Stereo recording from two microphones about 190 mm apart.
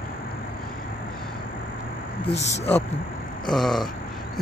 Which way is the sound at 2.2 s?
35° left (ahead or behind).